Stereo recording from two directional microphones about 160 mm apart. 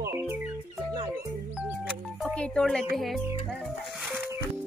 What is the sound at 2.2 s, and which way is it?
Speech, 5° left (ahead or behind).